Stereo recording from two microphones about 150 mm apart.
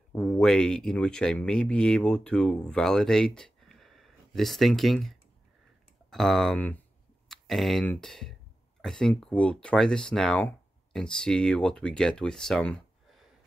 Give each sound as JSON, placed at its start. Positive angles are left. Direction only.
{"t": 0.1, "sound": "speech", "side_deg": 5}
{"t": 7.2, "sound": "a sound", "side_deg": 0}
{"t": 8.0, "sound": "speech", "side_deg": 0}